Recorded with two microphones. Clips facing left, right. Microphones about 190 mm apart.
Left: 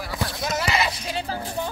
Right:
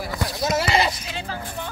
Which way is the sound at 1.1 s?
40° left (ahead or behind).